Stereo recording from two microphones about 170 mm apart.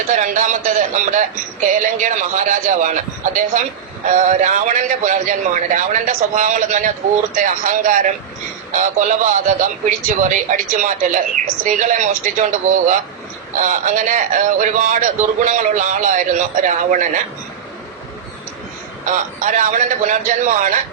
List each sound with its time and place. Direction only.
0.2 s a man's voice: 50° right (ahead or behind)
4.0 s a man's voice: 45° right (ahead or behind)
19.1 s a man's voice: 45° right (ahead or behind)